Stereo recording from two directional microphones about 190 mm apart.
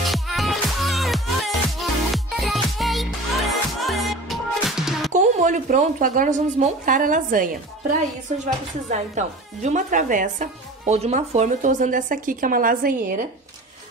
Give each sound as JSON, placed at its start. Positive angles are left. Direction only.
{"t": 0.0, "sound": "music", "side_deg": 0}
{"t": 5.1, "sound": "a woman's voice", "side_deg": -40}
{"t": 8.8, "sound": "speech", "side_deg": -40}